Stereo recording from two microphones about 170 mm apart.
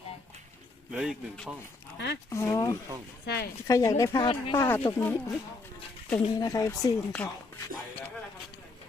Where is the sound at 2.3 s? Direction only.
15° left (ahead or behind).